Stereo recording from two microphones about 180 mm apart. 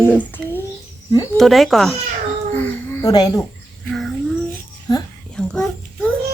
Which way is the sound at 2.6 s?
10° left (ahead or behind).